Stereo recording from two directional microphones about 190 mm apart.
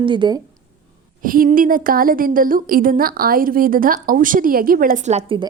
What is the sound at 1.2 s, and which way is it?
A woman's voice, 45° right (ahead or behind).